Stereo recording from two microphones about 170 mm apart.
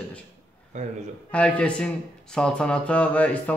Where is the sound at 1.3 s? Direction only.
5° left (ahead or behind).